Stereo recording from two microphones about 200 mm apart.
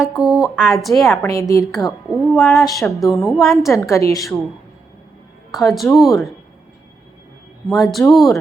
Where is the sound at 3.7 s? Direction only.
15° left (ahead or behind).